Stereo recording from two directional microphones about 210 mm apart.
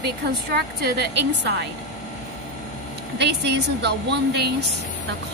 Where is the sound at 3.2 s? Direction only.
55° right (ahead or behind).